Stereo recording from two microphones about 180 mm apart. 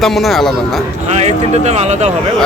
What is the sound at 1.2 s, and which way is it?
Speech, 40° right (ahead or behind).